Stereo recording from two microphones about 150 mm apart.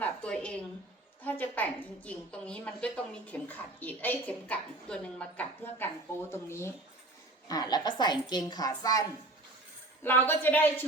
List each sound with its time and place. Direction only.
0.0 s a sound: 10° left (ahead or behind)
1.2 s a woman's voice: 10° left (ahead or behind)
10.0 s a woman's voice: 15° left (ahead or behind)